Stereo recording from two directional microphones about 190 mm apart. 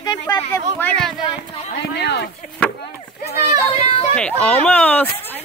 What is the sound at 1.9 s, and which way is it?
Speech, 60° left (ahead or behind).